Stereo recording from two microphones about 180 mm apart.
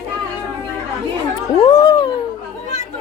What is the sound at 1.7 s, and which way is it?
Speech, 25° left (ahead or behind).